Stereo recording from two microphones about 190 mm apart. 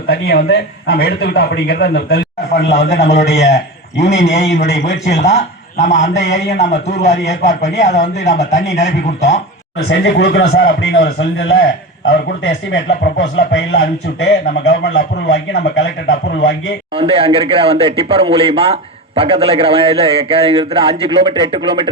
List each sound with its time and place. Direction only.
0.1 s a man's voice: 55° left (ahead or behind)
2.6 s a man's voice: 35° left (ahead or behind)
4.9 s speech: 70° left (ahead or behind)
5.2 s a man's voice: 35° left (ahead or behind)
9.8 s a man's voice: 60° left (ahead or behind)
16.9 s speech: 30° right (ahead or behind)